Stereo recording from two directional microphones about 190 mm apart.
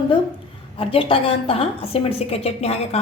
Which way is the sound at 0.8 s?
30° left (ahead or behind).